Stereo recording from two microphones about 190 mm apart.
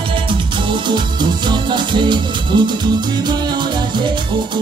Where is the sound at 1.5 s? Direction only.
25° right (ahead or behind).